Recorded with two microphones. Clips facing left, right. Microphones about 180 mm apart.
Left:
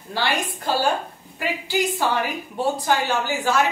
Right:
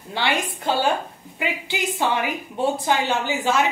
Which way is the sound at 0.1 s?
20° right (ahead or behind).